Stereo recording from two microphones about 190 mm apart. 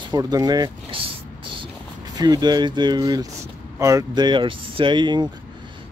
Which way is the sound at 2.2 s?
20° right (ahead or behind).